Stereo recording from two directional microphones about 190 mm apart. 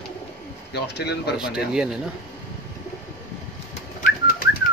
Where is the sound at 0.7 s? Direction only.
60° left (ahead or behind).